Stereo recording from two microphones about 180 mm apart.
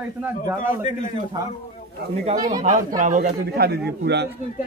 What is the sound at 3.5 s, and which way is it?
Speech, 60° right (ahead or behind).